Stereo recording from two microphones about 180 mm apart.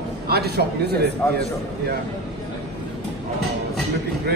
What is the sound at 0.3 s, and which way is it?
Speech, 65° right (ahead or behind).